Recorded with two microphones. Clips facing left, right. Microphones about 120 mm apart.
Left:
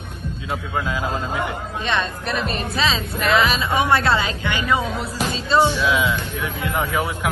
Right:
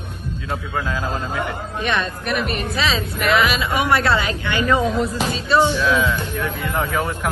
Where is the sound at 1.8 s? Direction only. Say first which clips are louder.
Right 1 dB; 25° left (ahead or behind).